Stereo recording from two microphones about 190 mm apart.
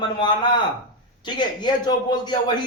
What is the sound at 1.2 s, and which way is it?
A man's voice, 25° left (ahead or behind).